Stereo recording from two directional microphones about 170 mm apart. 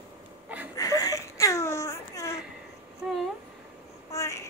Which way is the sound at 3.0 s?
Centre (ahead or behind).